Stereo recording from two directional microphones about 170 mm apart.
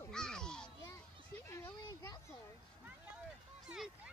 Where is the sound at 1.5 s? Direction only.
20° left (ahead or behind).